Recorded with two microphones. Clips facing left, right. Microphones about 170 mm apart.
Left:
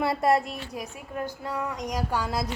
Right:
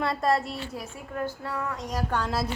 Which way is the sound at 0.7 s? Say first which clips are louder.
Left 1 dB; 15° left (ahead or behind).